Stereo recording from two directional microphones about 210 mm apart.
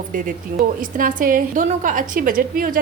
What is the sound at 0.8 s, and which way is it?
A woman's voice, 40° right (ahead or behind).